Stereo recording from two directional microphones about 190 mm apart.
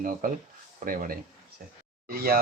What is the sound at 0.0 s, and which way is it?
Speech, 45° right (ahead or behind).